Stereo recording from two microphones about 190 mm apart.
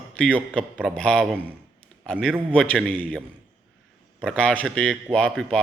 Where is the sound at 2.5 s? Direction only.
5° left (ahead or behind).